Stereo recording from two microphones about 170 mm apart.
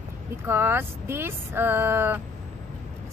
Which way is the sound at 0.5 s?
15° right (ahead or behind).